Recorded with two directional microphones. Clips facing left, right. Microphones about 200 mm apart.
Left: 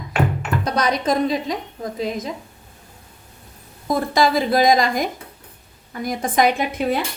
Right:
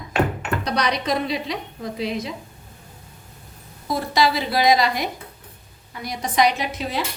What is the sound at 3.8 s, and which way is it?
A woman's voice, 50° left (ahead or behind).